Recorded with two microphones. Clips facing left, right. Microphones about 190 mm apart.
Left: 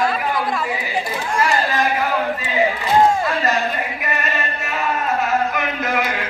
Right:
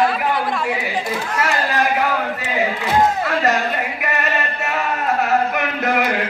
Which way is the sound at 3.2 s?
65° right (ahead or behind).